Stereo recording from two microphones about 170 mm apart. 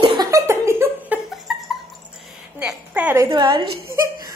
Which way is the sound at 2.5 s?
5° right (ahead or behind).